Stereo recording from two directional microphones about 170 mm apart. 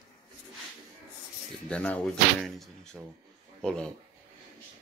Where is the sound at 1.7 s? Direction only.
10° left (ahead or behind).